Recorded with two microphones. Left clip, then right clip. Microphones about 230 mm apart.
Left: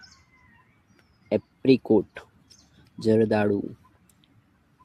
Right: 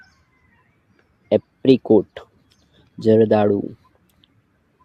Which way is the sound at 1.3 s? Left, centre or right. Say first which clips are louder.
Right 6 dB; centre.